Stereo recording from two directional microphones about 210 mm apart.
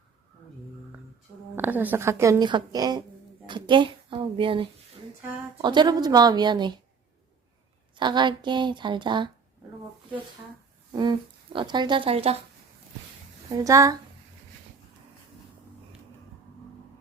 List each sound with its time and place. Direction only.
1.5 s a woman's voice: 10° right (ahead or behind)
7.9 s a woman's voice: 20° right (ahead or behind)
10.9 s a woman's voice: 20° right (ahead or behind)
13.5 s speech: 15° right (ahead or behind)